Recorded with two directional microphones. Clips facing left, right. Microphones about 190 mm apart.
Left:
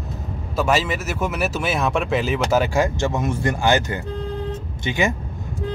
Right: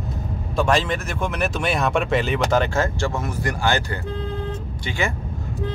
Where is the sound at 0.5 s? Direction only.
5° left (ahead or behind).